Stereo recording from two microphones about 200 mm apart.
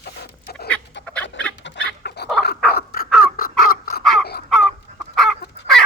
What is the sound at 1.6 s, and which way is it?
Chicken, 65° left (ahead or behind).